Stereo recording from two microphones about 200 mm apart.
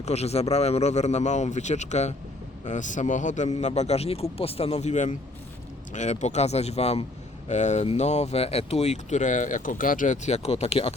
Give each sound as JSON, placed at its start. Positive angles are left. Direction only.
{"t": 0.0, "sound": "speech", "side_deg": 30}